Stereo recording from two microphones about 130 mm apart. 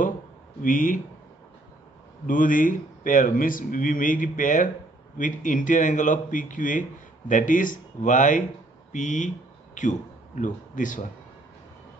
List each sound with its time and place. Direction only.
0.6 s speech: 90° left
2.2 s speech: 90° left
8.9 s speech: 70° left (ahead or behind)
10.4 s speech: 85° left